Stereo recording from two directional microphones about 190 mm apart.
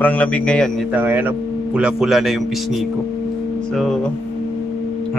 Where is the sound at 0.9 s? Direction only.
10° right (ahead or behind).